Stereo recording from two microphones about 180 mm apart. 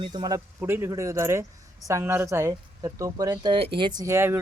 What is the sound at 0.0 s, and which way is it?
Speech, 25° right (ahead or behind).